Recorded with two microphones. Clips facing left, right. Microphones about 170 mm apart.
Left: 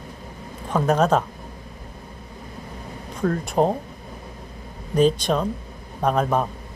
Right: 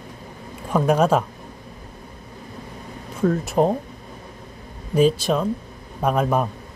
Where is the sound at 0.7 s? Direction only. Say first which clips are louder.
Right 1 dB; 10° right (ahead or behind).